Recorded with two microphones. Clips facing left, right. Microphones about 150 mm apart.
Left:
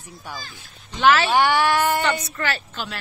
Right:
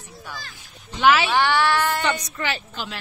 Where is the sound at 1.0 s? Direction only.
10° right (ahead or behind).